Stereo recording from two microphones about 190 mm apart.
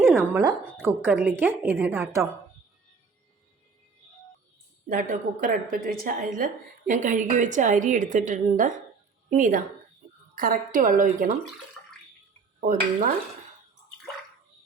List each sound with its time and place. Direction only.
0.2 s a woman's voice: 15° right (ahead or behind)
4.9 s a woman's voice: 45° right (ahead or behind)
12.5 s speech: 45° right (ahead or behind)